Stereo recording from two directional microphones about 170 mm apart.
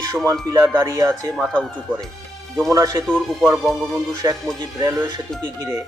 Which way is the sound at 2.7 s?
20° right (ahead or behind).